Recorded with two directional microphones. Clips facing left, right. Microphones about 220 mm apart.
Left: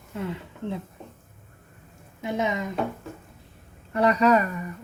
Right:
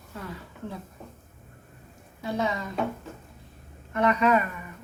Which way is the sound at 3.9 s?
35° left (ahead or behind).